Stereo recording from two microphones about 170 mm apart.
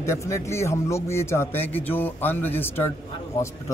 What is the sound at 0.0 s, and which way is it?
A man's voice, 15° left (ahead or behind).